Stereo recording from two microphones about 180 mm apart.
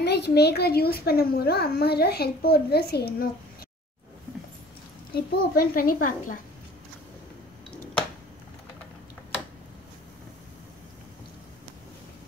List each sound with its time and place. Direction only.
0.0 s a child's voice: 65° left (ahead or behind)
5.1 s a woman's voice: 55° left (ahead or behind)